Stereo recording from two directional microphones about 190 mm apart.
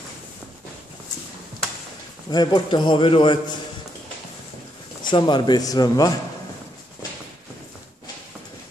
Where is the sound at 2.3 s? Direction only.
20° left (ahead or behind).